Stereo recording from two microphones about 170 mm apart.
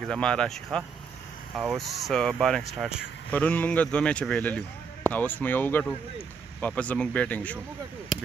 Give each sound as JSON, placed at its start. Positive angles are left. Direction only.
{"t": 0.1, "sound": "speech", "side_deg": 5}
{"t": 3.3, "sound": "speech", "side_deg": 10}